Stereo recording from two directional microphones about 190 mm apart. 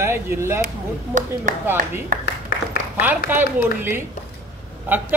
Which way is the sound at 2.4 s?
45° left (ahead or behind).